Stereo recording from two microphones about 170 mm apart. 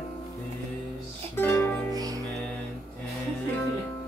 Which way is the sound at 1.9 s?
20° right (ahead or behind).